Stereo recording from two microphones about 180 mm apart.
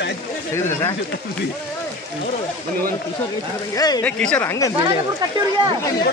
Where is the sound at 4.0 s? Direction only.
5° left (ahead or behind).